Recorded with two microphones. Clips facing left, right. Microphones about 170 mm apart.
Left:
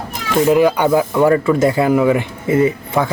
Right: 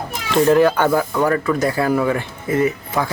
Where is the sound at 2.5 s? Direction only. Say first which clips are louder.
Left 4 dB; 25° left (ahead or behind).